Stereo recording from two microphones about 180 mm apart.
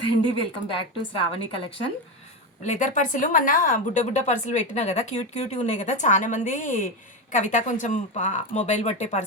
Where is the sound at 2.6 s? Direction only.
45° left (ahead or behind).